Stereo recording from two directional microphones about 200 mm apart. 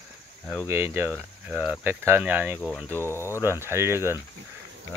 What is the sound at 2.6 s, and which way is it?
Speech, 5° left (ahead or behind).